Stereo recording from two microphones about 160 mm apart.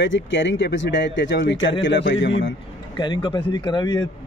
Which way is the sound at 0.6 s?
90° left.